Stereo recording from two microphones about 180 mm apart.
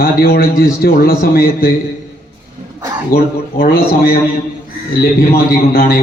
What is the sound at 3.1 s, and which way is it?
A man's voice, 55° left (ahead or behind).